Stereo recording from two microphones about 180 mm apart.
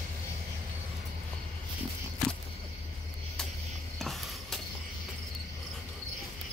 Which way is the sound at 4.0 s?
Centre (ahead or behind).